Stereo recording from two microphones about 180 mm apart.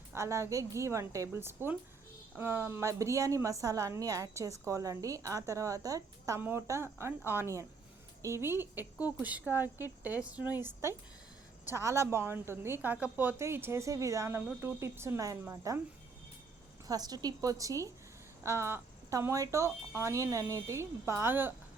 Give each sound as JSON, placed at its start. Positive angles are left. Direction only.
{"t": 0.1, "sound": "a woman's voice", "side_deg": -15}
{"t": 16.8, "sound": "a woman's voice", "side_deg": -20}